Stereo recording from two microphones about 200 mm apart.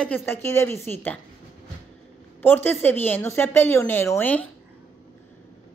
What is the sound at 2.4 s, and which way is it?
A woman's voice, 10° left (ahead or behind).